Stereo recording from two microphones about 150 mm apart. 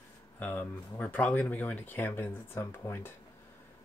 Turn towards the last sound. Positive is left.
turn(degrees=15)  # may be behind; listen again after turning